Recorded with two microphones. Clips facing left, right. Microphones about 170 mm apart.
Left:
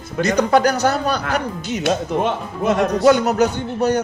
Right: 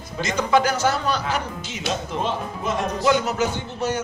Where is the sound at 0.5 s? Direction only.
40° left (ahead or behind).